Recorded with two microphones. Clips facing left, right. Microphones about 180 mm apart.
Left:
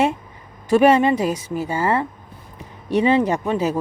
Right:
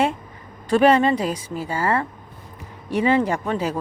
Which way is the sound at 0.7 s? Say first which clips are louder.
Left 2 dB; 15° left (ahead or behind).